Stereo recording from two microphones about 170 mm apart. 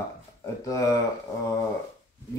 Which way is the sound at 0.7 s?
20° left (ahead or behind).